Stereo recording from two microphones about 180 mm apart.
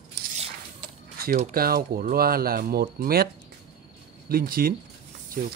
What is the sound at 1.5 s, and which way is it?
Speech, 55° right (ahead or behind).